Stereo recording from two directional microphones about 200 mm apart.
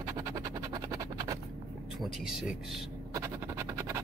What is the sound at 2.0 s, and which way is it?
Speech, centre (ahead or behind).